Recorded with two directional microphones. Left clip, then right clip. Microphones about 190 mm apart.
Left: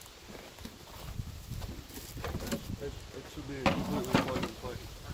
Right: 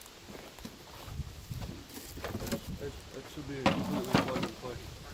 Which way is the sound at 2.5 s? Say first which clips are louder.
Even; centre (ahead or behind).